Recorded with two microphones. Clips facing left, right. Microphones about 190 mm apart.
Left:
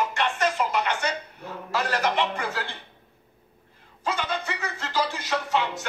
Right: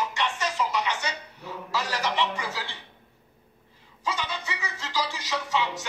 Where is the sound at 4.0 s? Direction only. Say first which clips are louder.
Left 3 dB; 55° left (ahead or behind).